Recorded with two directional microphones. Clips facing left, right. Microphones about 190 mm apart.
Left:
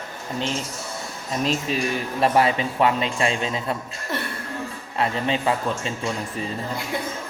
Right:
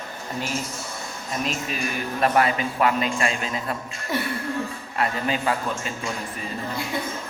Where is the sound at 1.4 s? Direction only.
30° left (ahead or behind).